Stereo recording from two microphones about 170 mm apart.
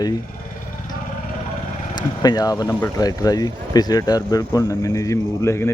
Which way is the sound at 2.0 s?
25° left (ahead or behind).